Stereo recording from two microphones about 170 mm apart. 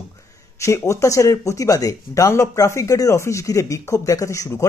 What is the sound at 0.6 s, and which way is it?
Speech, 15° left (ahead or behind).